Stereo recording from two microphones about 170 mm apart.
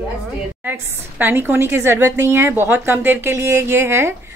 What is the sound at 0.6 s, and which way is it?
A woman's voice, 10° right (ahead or behind).